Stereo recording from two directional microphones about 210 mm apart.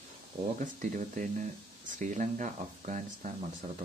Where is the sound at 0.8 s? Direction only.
40° right (ahead or behind).